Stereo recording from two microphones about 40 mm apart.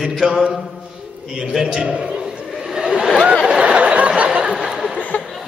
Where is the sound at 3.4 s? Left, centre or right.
Right.